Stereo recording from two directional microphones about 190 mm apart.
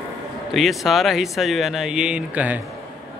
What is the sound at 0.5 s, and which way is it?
Speech, centre (ahead or behind).